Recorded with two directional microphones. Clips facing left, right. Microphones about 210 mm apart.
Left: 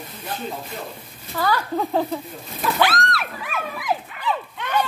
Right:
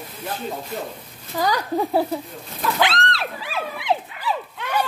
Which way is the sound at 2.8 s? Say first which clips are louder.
Left 1 dB; 25° right (ahead or behind).